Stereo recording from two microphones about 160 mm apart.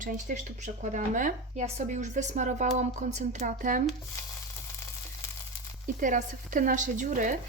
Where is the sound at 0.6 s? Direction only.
50° right (ahead or behind).